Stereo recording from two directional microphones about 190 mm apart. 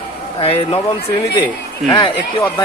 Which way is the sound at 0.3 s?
30° left (ahead or behind).